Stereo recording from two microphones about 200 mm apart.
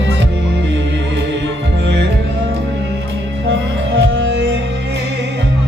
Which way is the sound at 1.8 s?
60° right (ahead or behind).